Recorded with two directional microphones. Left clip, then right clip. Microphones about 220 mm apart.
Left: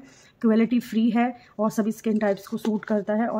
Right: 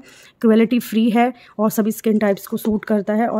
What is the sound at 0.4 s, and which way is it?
Speech, 45° right (ahead or behind).